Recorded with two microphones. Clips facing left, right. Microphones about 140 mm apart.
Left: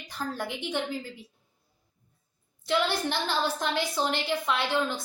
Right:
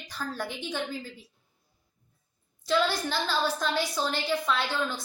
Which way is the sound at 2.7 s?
20° left (ahead or behind).